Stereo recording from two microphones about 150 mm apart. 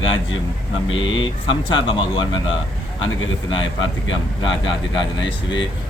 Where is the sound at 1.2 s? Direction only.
35° left (ahead or behind).